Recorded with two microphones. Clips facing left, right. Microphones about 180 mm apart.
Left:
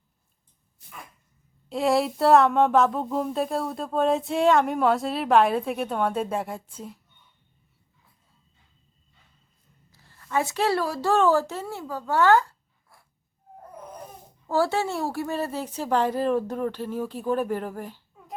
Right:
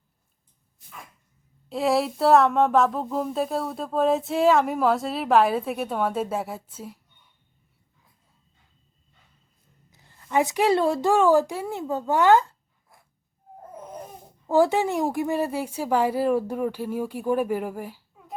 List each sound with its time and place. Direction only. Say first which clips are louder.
1.7 s speech: even; centre (ahead or behind)
9.9 s speech: right 3 dB; 20° right (ahead or behind)
11.1 s speech: right 1 dB; 10° right (ahead or behind)
14.4 s a woman's voice: right 4 dB; 20° right (ahead or behind)